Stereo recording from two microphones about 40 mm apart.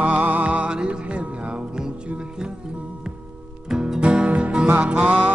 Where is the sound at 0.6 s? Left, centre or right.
Right.